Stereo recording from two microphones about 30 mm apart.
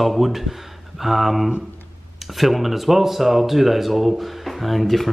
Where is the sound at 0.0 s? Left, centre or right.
Centre.